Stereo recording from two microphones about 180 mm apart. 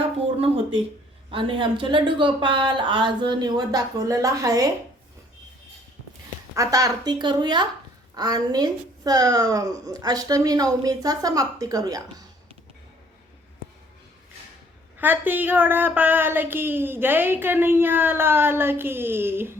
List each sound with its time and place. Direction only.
1.3 s a woman's voice: 30° right (ahead or behind)
6.5 s a woman's voice: 20° right (ahead or behind)
14.9 s speech: 10° right (ahead or behind)